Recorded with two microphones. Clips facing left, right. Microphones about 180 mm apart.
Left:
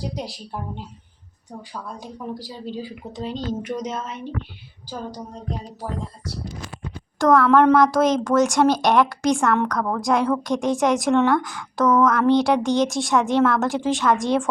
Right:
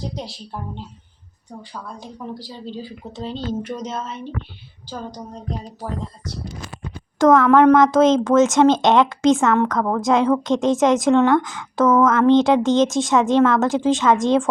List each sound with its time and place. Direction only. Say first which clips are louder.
2.5 s a woman's voice: left 1 dB; 10° left (ahead or behind)
7.2 s speech: right 3 dB; 20° right (ahead or behind)